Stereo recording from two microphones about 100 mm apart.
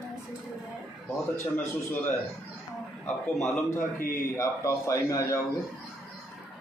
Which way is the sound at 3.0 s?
20° left (ahead or behind).